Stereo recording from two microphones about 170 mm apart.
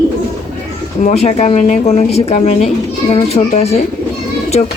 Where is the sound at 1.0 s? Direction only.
45° left (ahead or behind).